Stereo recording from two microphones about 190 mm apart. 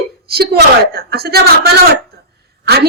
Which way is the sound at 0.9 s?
55° right (ahead or behind).